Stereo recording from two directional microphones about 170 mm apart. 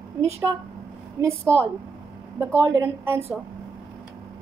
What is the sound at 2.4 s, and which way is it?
Speech, 15° right (ahead or behind).